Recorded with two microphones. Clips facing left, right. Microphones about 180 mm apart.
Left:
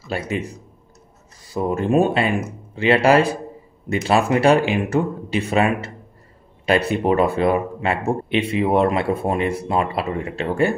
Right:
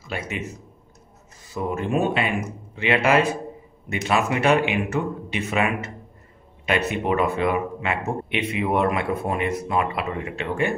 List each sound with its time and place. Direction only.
0.1 s speech: 35° left (ahead or behind)
1.5 s speech: 35° left (ahead or behind)
6.9 s speech: 35° left (ahead or behind)